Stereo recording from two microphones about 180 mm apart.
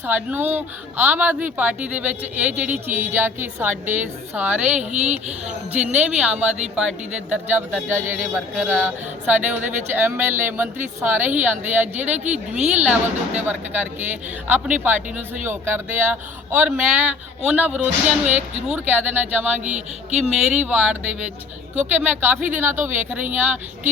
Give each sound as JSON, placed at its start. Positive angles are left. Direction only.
{"t": 0.0, "sound": "speech", "side_deg": -10}
{"t": 4.9, "sound": "a woman's voice", "side_deg": -40}
{"t": 5.1, "sound": "speech", "side_deg": -5}
{"t": 12.0, "sound": "a woman's voice", "side_deg": -40}
{"t": 12.8, "sound": "speech", "side_deg": -10}
{"t": 19.6, "sound": "a woman's voice", "side_deg": -40}
{"t": 20.3, "sound": "speech", "side_deg": -5}